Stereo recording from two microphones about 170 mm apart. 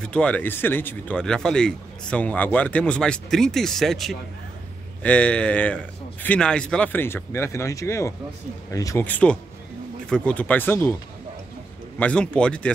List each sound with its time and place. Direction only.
0.0 s speech: 5° left (ahead or behind)
9.0 s speech: 10° left (ahead or behind)
12.0 s speech: 5° left (ahead or behind)